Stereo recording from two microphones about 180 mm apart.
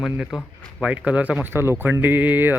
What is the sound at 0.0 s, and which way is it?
Speech, centre (ahead or behind).